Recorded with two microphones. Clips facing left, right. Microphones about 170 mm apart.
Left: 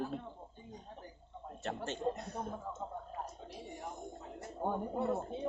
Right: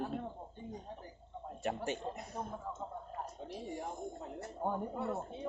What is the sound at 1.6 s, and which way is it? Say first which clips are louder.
A man's voice: left 1 dB; 10° right (ahead or behind).